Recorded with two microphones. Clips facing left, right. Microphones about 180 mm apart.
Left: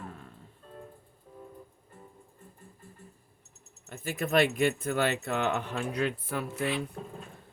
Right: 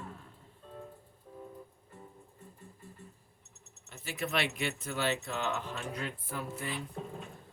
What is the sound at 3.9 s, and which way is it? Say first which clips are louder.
Speech: left 6 dB; 50° left (ahead or behind).